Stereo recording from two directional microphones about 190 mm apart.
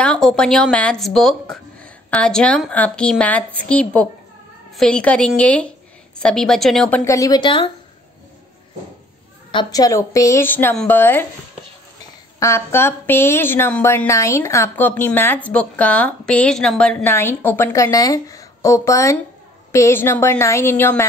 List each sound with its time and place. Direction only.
0.0 s speech: 5° left (ahead or behind)
7.1 s speech: 20° left (ahead or behind)
9.5 s a woman's voice: 20° left (ahead or behind)
12.4 s a woman's voice: 15° left (ahead or behind)